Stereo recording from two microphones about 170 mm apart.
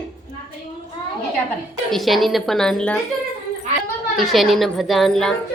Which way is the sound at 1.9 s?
Centre (ahead or behind).